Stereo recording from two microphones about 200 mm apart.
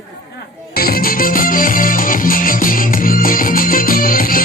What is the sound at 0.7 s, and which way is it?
Music, 50° left (ahead or behind).